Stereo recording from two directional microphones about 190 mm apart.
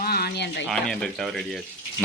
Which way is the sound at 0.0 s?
55° left (ahead or behind).